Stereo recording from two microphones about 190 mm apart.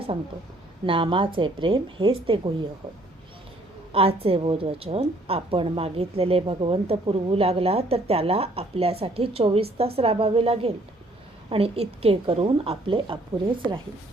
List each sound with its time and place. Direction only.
0.9 s a woman's voice: 25° right (ahead or behind)
3.9 s a woman's voice: 30° right (ahead or behind)